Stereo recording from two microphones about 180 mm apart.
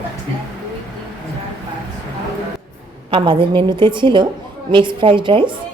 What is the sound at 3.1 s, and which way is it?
A woman's voice, 30° right (ahead or behind).